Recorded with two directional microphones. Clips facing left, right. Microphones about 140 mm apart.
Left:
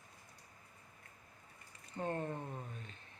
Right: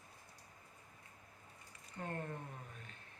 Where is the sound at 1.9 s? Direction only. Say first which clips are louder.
Left 5 dB; 25° left (ahead or behind).